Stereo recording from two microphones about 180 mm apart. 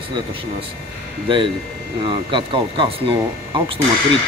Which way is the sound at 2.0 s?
25° right (ahead or behind).